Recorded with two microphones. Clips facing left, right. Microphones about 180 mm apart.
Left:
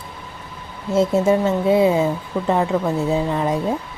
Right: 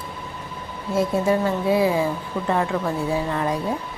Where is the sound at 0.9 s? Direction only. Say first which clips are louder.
Left 4 dB; 25° left (ahead or behind).